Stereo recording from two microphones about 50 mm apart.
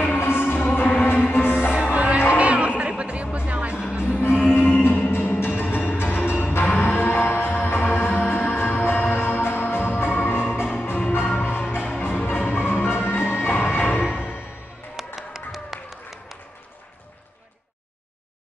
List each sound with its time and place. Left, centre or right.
0.0 s music: left
0.6 s music: left
1.8 s music: right
4.0 s music: left
15.1 s a sound: centre